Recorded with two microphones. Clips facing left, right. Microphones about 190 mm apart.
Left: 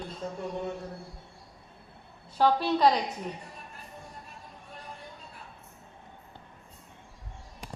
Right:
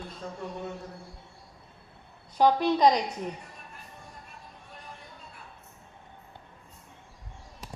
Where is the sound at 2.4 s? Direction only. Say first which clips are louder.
Right 2 dB; 15° right (ahead or behind).